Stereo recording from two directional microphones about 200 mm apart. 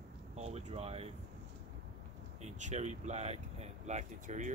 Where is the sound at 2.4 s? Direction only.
35° right (ahead or behind).